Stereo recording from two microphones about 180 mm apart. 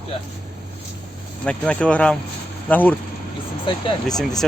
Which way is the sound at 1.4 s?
5° left (ahead or behind).